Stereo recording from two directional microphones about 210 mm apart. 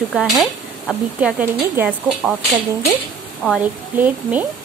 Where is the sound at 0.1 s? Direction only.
Centre (ahead or behind).